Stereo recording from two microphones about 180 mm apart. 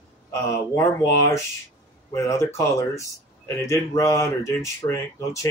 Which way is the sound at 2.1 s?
15° left (ahead or behind).